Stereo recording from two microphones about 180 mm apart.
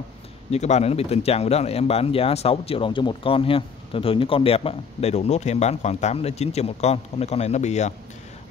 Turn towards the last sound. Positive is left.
turn(degrees=40)  # may be behind; listen again after turning